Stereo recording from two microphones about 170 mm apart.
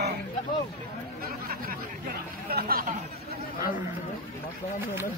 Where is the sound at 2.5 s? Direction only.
60° right (ahead or behind).